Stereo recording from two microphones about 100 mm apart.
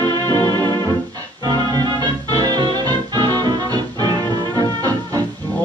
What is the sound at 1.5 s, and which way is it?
Music, 45° right (ahead or behind).